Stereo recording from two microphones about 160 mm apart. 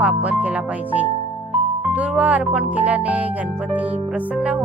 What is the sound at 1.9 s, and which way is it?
Speech, 10° right (ahead or behind).